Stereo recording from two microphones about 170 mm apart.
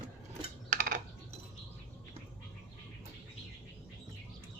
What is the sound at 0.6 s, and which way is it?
Typing, 60° right (ahead or behind).